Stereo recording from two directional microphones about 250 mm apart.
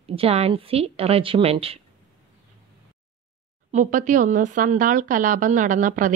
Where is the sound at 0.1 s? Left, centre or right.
Right.